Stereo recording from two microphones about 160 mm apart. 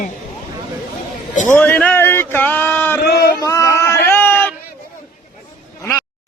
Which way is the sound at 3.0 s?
80° left.